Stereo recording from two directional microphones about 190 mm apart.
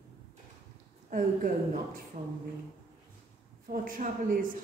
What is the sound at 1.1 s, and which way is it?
Speech, 45° right (ahead or behind).